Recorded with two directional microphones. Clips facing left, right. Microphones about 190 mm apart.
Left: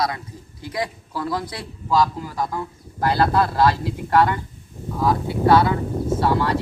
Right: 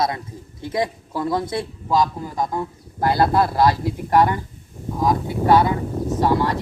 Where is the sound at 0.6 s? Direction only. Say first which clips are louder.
Right 4 dB; 25° right (ahead or behind).